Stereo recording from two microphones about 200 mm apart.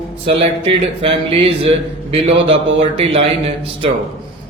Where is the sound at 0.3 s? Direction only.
30° right (ahead or behind).